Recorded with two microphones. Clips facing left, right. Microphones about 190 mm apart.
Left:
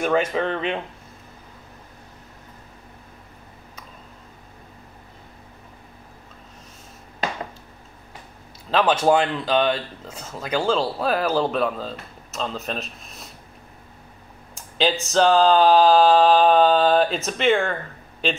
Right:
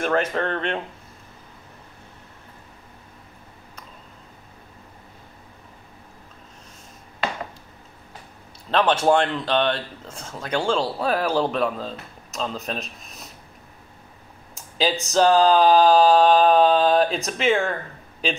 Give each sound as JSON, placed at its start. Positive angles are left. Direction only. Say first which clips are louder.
{"t": 0.0, "sound": "speech", "louder": "left 1 dB", "side_deg": 5}
{"t": 8.6, "sound": "speech", "louder": "even", "side_deg": 5}
{"t": 15.0, "sound": "speech", "louder": "even", "side_deg": 0}